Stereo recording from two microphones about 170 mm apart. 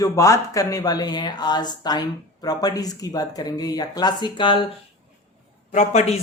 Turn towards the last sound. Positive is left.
turn(degrees=40)  # may be behind; listen again after turning